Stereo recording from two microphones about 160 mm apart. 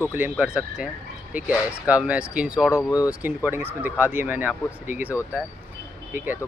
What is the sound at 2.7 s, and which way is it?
Speech, 20° left (ahead or behind).